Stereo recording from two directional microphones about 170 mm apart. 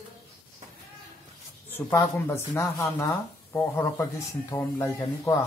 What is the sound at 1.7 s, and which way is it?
Speech, 10° left (ahead or behind).